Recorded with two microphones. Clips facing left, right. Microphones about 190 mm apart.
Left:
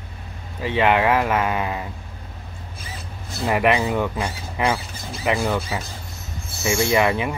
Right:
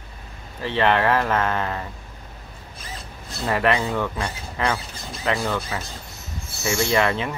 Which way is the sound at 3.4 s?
15° left (ahead or behind).